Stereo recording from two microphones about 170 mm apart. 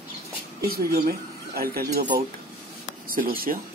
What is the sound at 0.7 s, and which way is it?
Speech, 65° right (ahead or behind).